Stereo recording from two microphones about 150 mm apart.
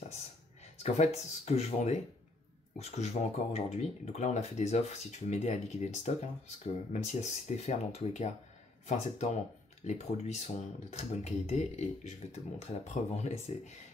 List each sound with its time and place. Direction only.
0.7 s speech: 45° left (ahead or behind)